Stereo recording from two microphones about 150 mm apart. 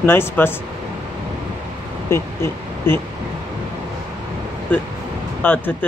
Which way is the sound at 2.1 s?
15° left (ahead or behind).